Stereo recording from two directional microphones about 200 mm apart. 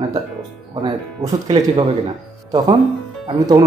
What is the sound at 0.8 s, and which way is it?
Speech, 20° right (ahead or behind).